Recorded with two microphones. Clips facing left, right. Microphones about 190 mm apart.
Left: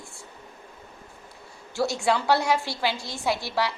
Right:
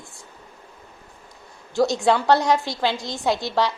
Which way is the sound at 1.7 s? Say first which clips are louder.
Right 5 dB; 20° right (ahead or behind).